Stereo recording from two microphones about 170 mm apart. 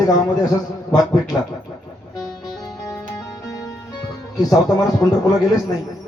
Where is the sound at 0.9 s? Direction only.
20° left (ahead or behind).